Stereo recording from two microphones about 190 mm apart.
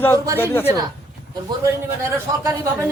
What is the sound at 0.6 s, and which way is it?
Speech, 15° right (ahead or behind).